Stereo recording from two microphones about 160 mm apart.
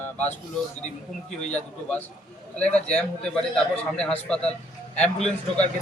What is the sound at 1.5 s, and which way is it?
A man's voice, 10° left (ahead or behind).